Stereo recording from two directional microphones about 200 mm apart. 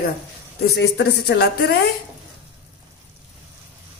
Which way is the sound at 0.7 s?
60° left (ahead or behind).